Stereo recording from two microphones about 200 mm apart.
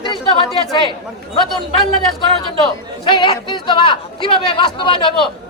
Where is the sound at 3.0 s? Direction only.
25° left (ahead or behind).